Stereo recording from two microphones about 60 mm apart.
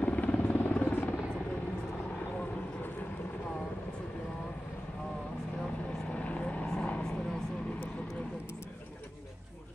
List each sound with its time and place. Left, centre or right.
0.0 s helicopter: left
6.1 s vehicle: centre